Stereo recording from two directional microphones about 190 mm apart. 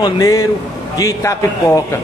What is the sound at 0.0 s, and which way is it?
A man's voice, 20° left (ahead or behind).